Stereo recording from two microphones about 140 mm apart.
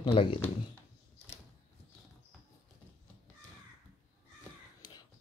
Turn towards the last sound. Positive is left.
turn(degrees=30)  # may be behind; listen again after turning